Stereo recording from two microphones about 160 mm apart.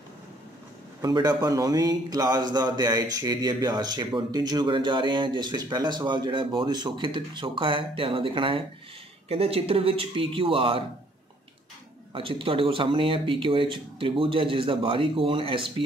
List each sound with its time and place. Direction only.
1.0 s a man's voice: 25° right (ahead or behind)
12.1 s speech: 35° right (ahead or behind)